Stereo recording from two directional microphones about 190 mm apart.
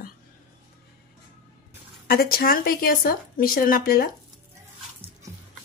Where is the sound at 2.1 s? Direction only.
50° left (ahead or behind).